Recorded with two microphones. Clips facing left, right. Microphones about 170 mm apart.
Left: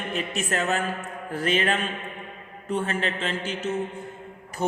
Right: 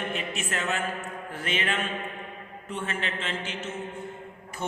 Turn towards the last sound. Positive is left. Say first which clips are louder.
# left 6 dB
turn(degrees=35)  # may be behind; listen again after turning